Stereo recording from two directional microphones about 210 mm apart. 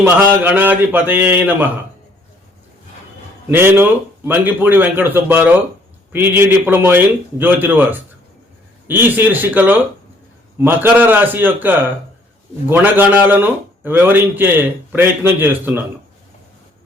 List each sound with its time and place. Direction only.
0.0 s a man's voice: 10° right (ahead or behind)
3.5 s a man's voice: 10° right (ahead or behind)